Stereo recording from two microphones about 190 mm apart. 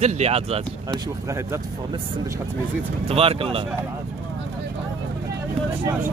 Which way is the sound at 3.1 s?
30° right (ahead or behind).